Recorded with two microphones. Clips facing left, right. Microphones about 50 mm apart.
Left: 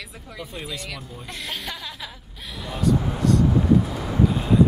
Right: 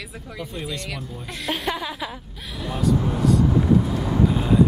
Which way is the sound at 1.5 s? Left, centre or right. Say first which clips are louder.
Right 9 dB; centre.